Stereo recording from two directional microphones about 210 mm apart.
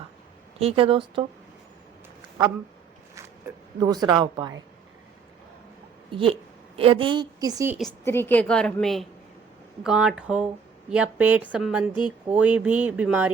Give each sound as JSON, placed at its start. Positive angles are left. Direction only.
{"t": 0.6, "sound": "speech", "side_deg": -25}
{"t": 3.8, "sound": "speech", "side_deg": -20}
{"t": 6.1, "sound": "a woman's voice", "side_deg": -25}
{"t": 7.9, "sound": "speech", "side_deg": 10}